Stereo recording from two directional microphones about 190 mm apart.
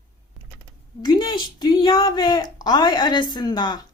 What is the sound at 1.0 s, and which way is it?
A woman's voice, 25° left (ahead or behind).